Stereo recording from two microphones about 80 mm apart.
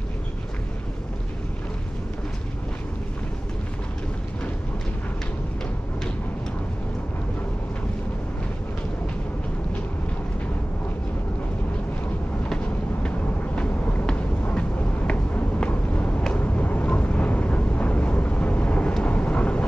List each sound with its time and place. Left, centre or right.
12.4 s vehicle: centre